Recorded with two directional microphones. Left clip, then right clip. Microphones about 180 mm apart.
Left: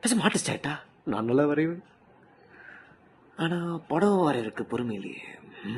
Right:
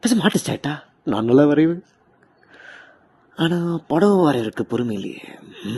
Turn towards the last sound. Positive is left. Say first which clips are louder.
# right 6 dB
turn(degrees=-30)  # may be behind; listen again after turning